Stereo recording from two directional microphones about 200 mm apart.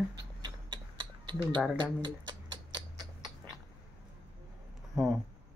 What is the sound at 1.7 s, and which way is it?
Speech, 25° right (ahead or behind).